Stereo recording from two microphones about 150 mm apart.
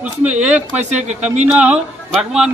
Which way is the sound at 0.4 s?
10° right (ahead or behind).